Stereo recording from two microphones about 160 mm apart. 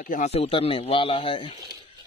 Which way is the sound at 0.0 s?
55° left (ahead or behind).